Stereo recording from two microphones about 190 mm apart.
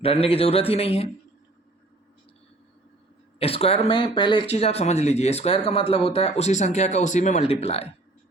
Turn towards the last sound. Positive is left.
turn(degrees=30)  # may be behind; listen again after turning